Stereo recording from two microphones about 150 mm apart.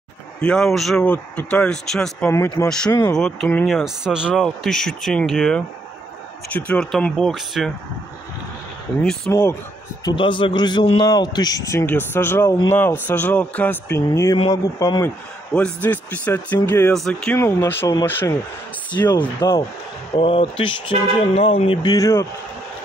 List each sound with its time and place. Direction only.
0.4 s speech: 5° left (ahead or behind)
2.2 s a man's voice: 15° left (ahead or behind)
3.2 s speech: 5° left (ahead or behind)
9.3 s speech: 15° left (ahead or behind)
10.0 s a man's voice: 35° left (ahead or behind)
11.8 s a man's voice: 15° left (ahead or behind)
15.5 s speech: 10° left (ahead or behind)
17.4 s speech: 15° left (ahead or behind)
18.9 s a man's voice: 30° left (ahead or behind)
21.9 s a man's voice: 20° left (ahead or behind)